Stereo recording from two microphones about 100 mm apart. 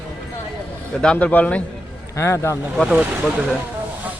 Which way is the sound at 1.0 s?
10° left (ahead or behind).